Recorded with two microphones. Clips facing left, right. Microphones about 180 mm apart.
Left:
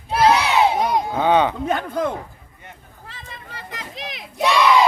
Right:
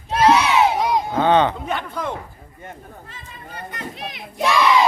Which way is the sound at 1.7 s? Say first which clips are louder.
Left 4 dB; 50° left (ahead or behind).